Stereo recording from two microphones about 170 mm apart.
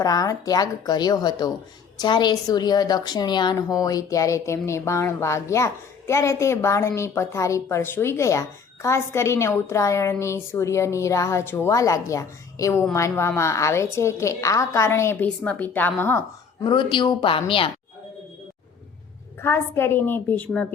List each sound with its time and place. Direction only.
0.0 s a woman's voice: 20° left (ahead or behind)
16.6 s speech: 30° left (ahead or behind)
19.4 s a woman's voice: 15° left (ahead or behind)